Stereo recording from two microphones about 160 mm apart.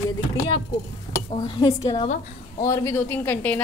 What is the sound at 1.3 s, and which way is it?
A woman's voice, 30° left (ahead or behind).